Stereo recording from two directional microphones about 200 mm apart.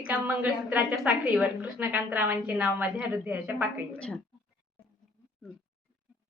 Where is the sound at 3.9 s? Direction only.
5° left (ahead or behind).